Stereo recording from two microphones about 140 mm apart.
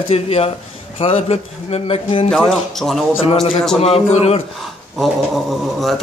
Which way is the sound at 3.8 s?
45° left (ahead or behind).